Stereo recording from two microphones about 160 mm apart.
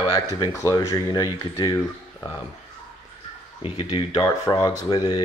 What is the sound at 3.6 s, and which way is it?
Speech, 35° left (ahead or behind).